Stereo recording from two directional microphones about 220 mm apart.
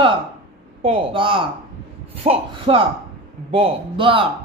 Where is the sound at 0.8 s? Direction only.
25° right (ahead or behind).